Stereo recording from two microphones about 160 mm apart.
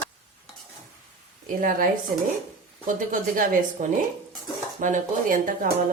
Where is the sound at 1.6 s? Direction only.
60° right (ahead or behind).